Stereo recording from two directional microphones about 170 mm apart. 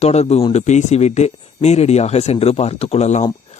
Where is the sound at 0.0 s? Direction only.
40° left (ahead or behind).